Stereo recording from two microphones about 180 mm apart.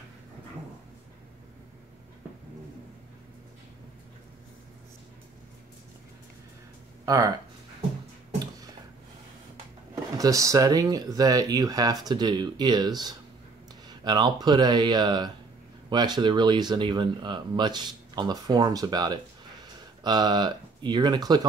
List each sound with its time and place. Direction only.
7.1 s speech: 20° right (ahead or behind)
10.1 s speech: 20° right (ahead or behind)